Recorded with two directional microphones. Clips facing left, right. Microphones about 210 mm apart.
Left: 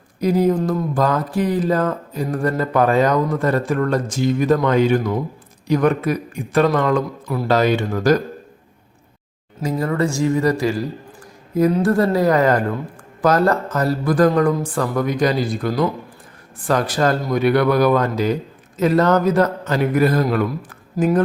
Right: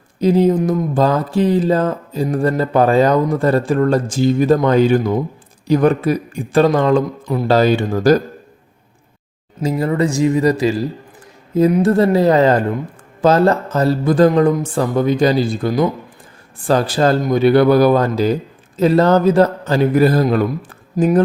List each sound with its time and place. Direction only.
0.2 s a man's voice: 25° right (ahead or behind)
9.6 s speech: 25° right (ahead or behind)
20.9 s speech: 20° right (ahead or behind)